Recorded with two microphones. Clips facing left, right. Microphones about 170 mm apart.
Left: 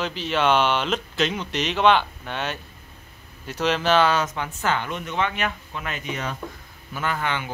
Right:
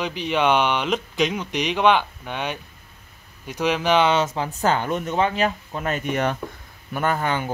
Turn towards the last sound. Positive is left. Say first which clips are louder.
# right 4 dB
turn(degrees=-40)  # may be behind; listen again after turning